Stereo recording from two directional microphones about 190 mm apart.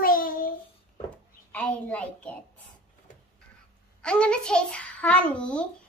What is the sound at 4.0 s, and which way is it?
A child's voice, 5° left (ahead or behind).